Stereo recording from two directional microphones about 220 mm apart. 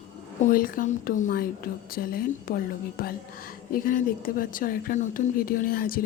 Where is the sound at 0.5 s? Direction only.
40° left (ahead or behind).